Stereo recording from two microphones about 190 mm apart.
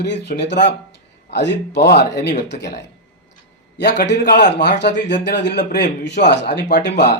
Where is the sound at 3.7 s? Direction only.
65° left (ahead or behind).